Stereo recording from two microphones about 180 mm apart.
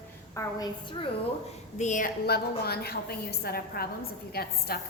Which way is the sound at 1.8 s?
45° left (ahead or behind).